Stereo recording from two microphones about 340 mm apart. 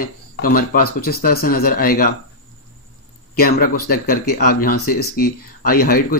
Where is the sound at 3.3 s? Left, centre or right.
Left.